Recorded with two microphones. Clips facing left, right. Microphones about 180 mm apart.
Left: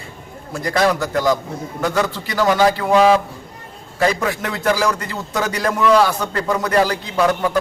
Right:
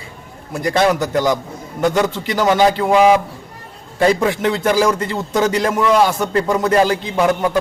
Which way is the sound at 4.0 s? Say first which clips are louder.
Right 4 dB; 25° right (ahead or behind).